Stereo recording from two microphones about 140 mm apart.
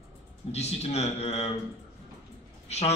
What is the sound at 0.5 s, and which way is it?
A man's voice, 50° left (ahead or behind).